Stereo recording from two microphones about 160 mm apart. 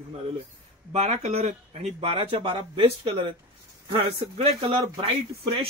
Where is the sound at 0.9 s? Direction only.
40° right (ahead or behind).